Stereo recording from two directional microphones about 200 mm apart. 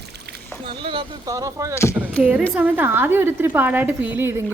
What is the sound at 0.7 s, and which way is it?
A woman's voice, 25° right (ahead or behind).